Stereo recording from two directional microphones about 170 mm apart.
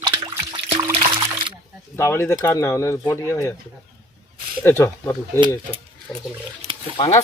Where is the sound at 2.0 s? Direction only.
15° left (ahead or behind).